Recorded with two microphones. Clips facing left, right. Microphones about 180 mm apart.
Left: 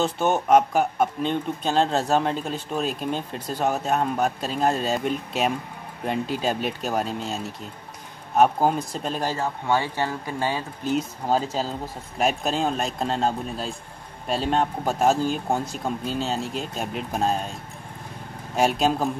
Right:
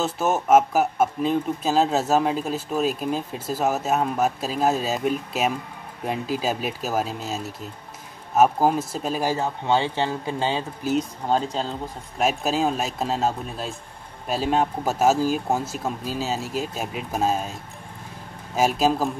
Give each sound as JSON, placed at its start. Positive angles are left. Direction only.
{"t": 0.0, "sound": "speech", "side_deg": -5}
{"t": 9.7, "sound": "speech", "side_deg": -20}
{"t": 10.8, "sound": "speech", "side_deg": 0}
{"t": 18.6, "sound": "speech", "side_deg": 0}